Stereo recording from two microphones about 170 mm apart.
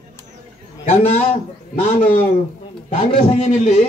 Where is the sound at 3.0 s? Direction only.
40° left (ahead or behind).